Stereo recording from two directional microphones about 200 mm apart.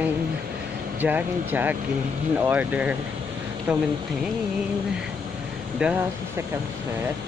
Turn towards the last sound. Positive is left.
turn(degrees=-5)  # may be behind; listen again after turning